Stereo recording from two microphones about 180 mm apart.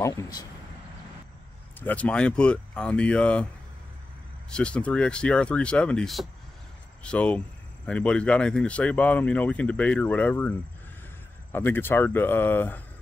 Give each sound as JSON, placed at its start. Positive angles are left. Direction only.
{"t": 0.0, "sound": "speech", "side_deg": 20}
{"t": 1.8, "sound": "speech", "side_deg": 10}
{"t": 4.5, "sound": "speech", "side_deg": 5}
{"t": 11.5, "sound": "speech", "side_deg": 10}